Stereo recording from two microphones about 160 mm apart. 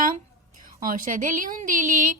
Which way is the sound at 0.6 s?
60° right (ahead or behind).